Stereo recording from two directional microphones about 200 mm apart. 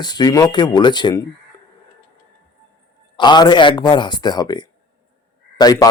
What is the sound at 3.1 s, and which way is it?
A man's voice, 20° left (ahead or behind).